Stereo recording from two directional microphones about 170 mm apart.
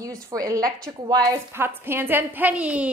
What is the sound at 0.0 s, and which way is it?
A woman's voice, 20° right (ahead or behind).